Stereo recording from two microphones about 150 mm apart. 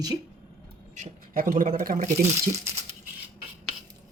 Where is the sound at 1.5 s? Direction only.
65° right (ahead or behind).